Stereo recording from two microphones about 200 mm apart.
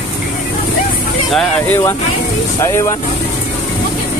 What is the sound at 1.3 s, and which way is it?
Speech, 5° left (ahead or behind).